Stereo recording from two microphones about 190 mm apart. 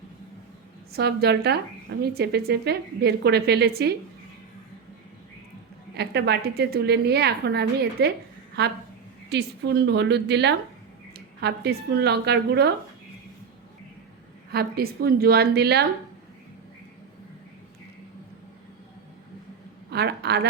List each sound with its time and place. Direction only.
0.9 s speech: 60° right (ahead or behind)
6.0 s speech: 60° right (ahead or behind)
14.5 s speech: 55° right (ahead or behind)
19.9 s speech: 60° right (ahead or behind)